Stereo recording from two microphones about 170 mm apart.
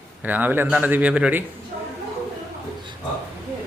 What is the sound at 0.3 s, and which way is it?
Speech, 10° right (ahead or behind).